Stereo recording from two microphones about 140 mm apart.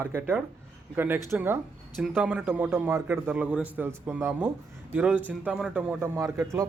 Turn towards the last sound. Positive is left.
turn(degrees=-20)  # may be behind; listen again after turning